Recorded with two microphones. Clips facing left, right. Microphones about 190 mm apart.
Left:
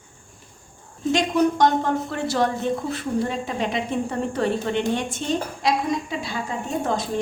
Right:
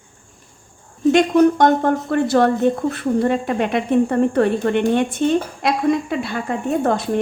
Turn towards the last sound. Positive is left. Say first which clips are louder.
# right 6 dB
turn(degrees=-60)  # may be behind; listen again after turning